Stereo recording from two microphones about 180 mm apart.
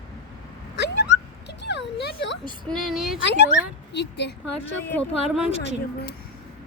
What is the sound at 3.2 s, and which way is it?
A woman's voice, 75° left (ahead or behind).